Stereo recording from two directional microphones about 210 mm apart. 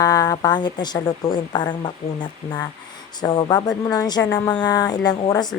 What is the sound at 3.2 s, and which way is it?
Speech, 20° left (ahead or behind).